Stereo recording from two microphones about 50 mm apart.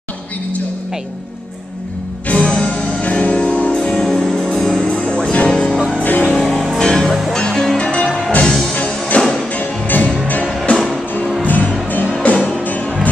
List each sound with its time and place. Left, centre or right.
2.2 s music: left
3.9 s music: centre
5.9 s music: left
6.2 s music: centre
9.6 s music: left